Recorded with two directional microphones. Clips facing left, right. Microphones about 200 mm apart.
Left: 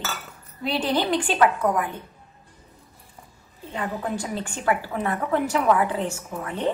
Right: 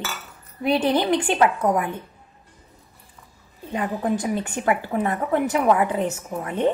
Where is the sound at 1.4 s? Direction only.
25° right (ahead or behind).